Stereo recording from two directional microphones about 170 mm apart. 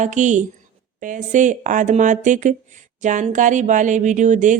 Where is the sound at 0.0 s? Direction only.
45° right (ahead or behind).